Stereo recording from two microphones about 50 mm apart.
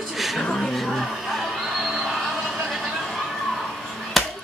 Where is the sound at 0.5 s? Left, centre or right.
Centre.